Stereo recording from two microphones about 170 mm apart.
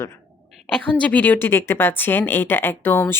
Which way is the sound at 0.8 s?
5° left (ahead or behind).